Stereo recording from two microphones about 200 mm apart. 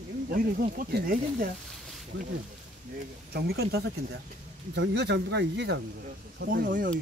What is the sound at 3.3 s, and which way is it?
Speech, 55° right (ahead or behind).